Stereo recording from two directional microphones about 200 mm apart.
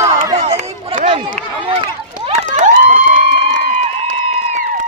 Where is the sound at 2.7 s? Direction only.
45° right (ahead or behind).